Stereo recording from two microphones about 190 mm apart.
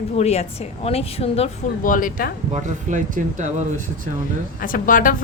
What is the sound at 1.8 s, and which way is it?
Speech, 45° left (ahead or behind).